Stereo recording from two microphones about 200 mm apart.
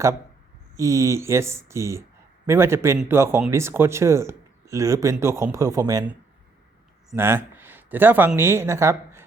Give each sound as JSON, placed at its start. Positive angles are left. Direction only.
{"t": 0.8, "sound": "speech", "side_deg": -15}